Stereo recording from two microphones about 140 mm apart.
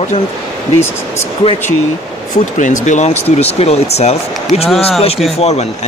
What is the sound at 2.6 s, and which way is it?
Speech, 60° left (ahead or behind).